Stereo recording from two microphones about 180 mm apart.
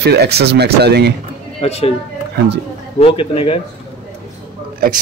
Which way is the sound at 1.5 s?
35° left (ahead or behind).